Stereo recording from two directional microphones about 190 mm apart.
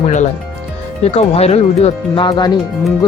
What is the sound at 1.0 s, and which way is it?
Speech, 30° left (ahead or behind).